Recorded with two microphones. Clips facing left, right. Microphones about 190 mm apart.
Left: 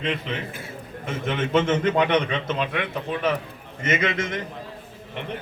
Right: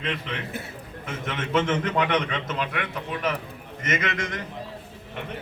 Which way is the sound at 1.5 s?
30° left (ahead or behind).